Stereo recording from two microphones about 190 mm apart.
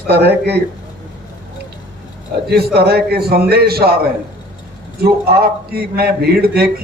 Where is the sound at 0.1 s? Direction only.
60° right (ahead or behind).